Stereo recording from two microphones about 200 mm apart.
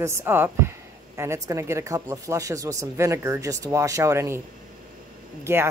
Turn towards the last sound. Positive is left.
turn(degrees=-10)  # may be behind; listen again after turning